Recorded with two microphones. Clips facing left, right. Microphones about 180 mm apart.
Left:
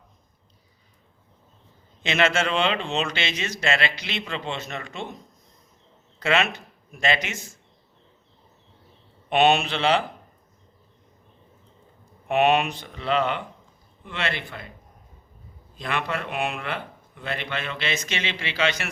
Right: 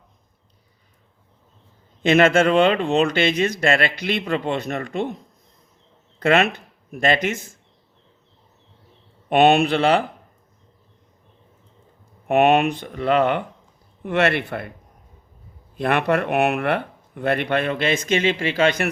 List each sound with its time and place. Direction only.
2.0 s speech: 50° right (ahead or behind)
6.1 s speech: 55° right (ahead or behind)
9.3 s speech: 55° right (ahead or behind)
12.3 s speech: 55° right (ahead or behind)
15.7 s speech: 60° right (ahead or behind)